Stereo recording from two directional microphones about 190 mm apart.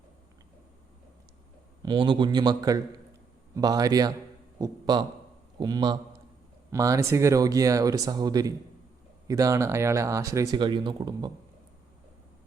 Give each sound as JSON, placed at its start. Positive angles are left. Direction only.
{"t": 1.8, "sound": "a man's voice", "side_deg": -25}